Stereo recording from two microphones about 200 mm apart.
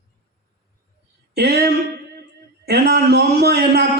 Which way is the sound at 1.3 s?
55° right (ahead or behind).